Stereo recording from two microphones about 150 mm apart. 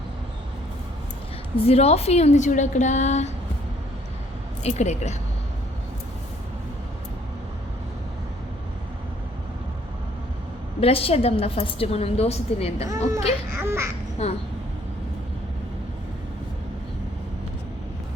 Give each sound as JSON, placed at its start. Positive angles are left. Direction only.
{"t": 1.5, "sound": "a woman's voice", "side_deg": 45}
{"t": 4.6, "sound": "a woman's voice", "side_deg": 50}
{"t": 10.8, "sound": "a woman's voice", "side_deg": 40}
{"t": 12.9, "sound": "speech", "side_deg": -20}
{"t": 14.2, "sound": "a woman's voice", "side_deg": 45}